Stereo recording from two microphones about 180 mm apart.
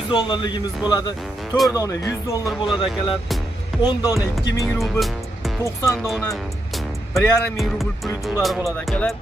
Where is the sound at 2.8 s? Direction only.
30° left (ahead or behind).